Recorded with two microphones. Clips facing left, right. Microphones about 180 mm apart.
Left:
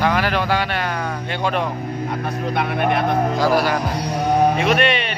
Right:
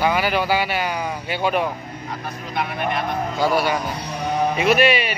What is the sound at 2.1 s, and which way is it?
Speech, 55° left (ahead or behind).